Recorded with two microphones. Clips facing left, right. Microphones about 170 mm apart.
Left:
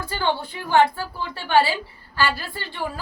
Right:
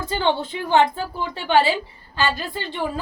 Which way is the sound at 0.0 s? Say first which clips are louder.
Right 3 dB; 20° right (ahead or behind).